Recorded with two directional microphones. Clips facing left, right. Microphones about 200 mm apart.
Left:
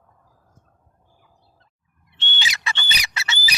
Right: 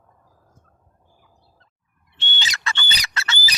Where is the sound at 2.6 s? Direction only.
10° left (ahead or behind).